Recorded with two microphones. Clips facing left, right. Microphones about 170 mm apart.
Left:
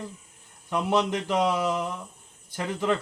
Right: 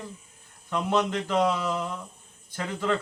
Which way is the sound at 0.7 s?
15° left (ahead or behind).